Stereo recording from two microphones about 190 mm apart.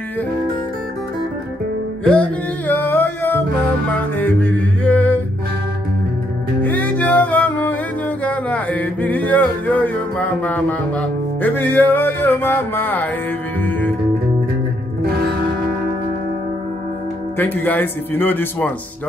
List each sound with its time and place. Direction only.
2.0 s music: 5° left (ahead or behind)
4.2 s mantra: 10° left (ahead or behind)
6.6 s music: 10° left (ahead or behind)
8.2 s a sound: 5° left (ahead or behind)
13.6 s music: 10° left (ahead or behind)
17.4 s a sound: 10° left (ahead or behind)